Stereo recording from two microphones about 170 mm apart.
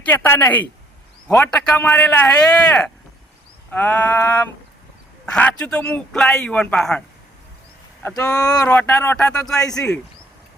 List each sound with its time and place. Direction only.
0.0 s a man's voice: 10° left (ahead or behind)
8.0 s a man's voice: 10° left (ahead or behind)